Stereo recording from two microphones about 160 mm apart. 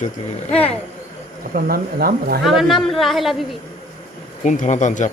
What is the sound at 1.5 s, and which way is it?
Speech, 65° right (ahead or behind).